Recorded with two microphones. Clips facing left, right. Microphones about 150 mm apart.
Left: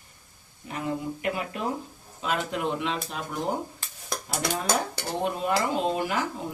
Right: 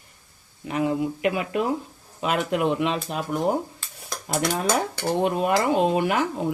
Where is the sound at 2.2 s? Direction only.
70° right (ahead or behind).